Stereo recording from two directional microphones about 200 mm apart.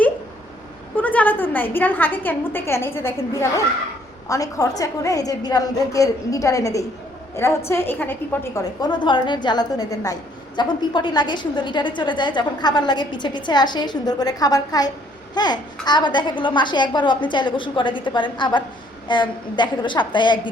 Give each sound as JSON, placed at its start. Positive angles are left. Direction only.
{"t": 0.9, "sound": "a woman's voice", "side_deg": 10}
{"t": 4.3, "sound": "a woman's voice", "side_deg": 15}
{"t": 8.8, "sound": "a woman's voice", "side_deg": 20}